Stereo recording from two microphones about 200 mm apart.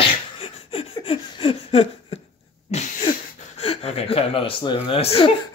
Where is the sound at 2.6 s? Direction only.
35° left (ahead or behind).